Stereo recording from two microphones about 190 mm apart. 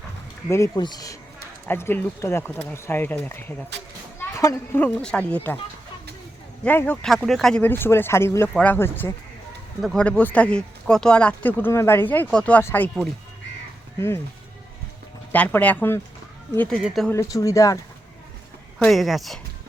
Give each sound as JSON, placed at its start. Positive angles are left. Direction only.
{"t": 0.5, "sound": "speech", "side_deg": 15}
{"t": 6.7, "sound": "speech", "side_deg": 10}
{"t": 15.3, "sound": "speech", "side_deg": 10}
{"t": 17.1, "sound": "speech", "side_deg": 15}
{"t": 18.8, "sound": "speech", "side_deg": 0}